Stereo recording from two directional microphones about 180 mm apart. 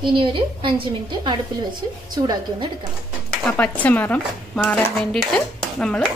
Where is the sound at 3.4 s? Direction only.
10° left (ahead or behind).